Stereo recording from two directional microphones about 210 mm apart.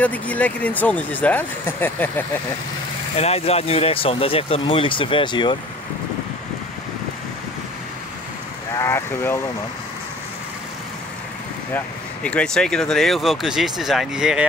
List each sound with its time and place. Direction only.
0.0 s speech: 5° left (ahead or behind)
3.2 s speech: 30° left (ahead or behind)
8.7 s speech: 10° left (ahead or behind)
11.7 s speech: 5° left (ahead or behind)